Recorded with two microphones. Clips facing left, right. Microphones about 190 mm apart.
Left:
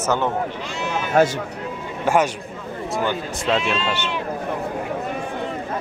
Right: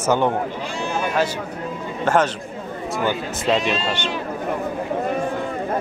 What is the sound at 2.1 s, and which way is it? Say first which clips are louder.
Speech: even; 10° left (ahead or behind).